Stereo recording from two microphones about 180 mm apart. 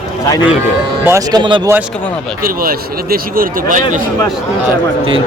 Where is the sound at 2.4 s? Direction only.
55° right (ahead or behind).